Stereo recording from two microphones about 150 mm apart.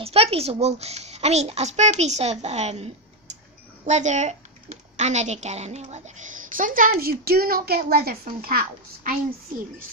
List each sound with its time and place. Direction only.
0.0 s a woman's voice: 40° right (ahead or behind); by 9.1 s 80° right